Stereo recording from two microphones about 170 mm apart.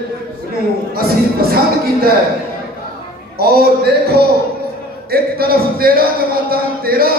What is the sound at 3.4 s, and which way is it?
A man's voice, 65° right (ahead or behind).